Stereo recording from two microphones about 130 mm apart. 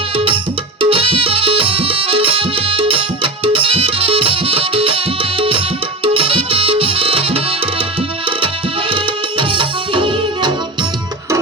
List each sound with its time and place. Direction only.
0.8 s music: 45° right (ahead or behind)
5.4 s tabla: 45° right (ahead or behind)
6.1 s music: 45° right (ahead or behind)
8.9 s music: 40° right (ahead or behind)